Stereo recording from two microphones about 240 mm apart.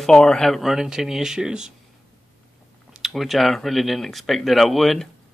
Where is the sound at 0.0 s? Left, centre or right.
Centre.